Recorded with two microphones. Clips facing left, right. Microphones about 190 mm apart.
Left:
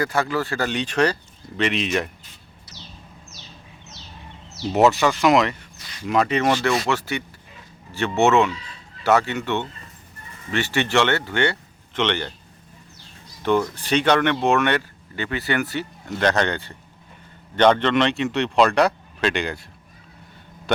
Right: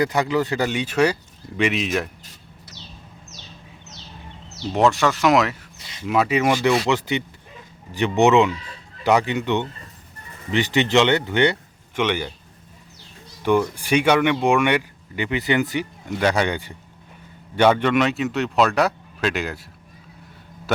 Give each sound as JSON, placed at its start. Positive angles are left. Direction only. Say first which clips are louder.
{"t": 0.0, "sound": "speech", "louder": "right 3 dB", "side_deg": -20}
{"t": 4.6, "sound": "speech", "louder": "left 1 dB", "side_deg": 5}
{"t": 5.8, "sound": "a sound", "louder": "even", "side_deg": -20}
{"t": 6.1, "sound": "speech", "louder": "right 1 dB", "side_deg": -5}
{"t": 13.4, "sound": "speech", "louder": "right 1 dB", "side_deg": -10}
{"t": 20.7, "sound": "a man's voice", "louder": "left 1 dB", "side_deg": -5}